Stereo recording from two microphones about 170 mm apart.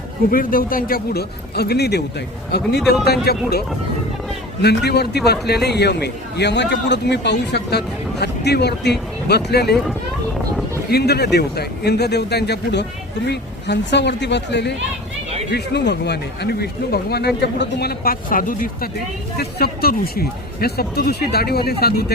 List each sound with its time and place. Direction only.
0.3 s a man's voice: 55° left (ahead or behind)
4.6 s a man's voice: 75° left (ahead or behind)
10.9 s a man's voice: 70° left (ahead or behind); by 18.9 s 55° left (ahead or behind)
19.4 s a man's voice: 70° left (ahead or behind)